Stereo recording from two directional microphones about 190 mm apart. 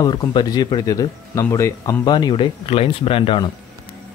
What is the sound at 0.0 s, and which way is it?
Speech, 20° left (ahead or behind).